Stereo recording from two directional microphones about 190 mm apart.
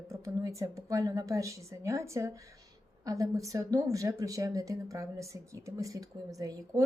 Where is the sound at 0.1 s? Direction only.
15° right (ahead or behind).